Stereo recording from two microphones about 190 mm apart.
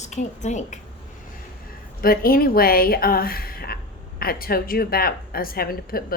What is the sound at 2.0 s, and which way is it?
Speech, 50° left (ahead or behind).